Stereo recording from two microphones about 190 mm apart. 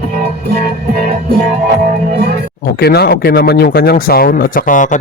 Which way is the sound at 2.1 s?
55° right (ahead or behind).